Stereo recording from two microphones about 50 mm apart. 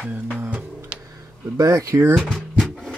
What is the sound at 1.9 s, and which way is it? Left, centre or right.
Speech, right.